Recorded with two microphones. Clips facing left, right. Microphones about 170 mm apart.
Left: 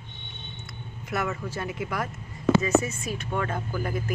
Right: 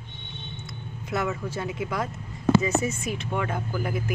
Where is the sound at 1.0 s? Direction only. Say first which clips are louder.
Right 1 dB; 15° right (ahead or behind).